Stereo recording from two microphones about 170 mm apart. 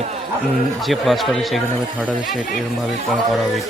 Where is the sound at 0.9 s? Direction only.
Centre (ahead or behind).